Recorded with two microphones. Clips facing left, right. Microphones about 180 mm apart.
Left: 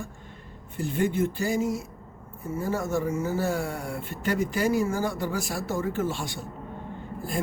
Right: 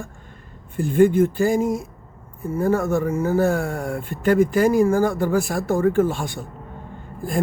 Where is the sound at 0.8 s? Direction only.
50° right (ahead or behind).